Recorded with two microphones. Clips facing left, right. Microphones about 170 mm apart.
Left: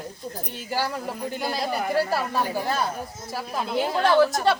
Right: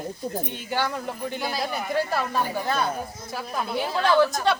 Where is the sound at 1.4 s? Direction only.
Centre (ahead or behind).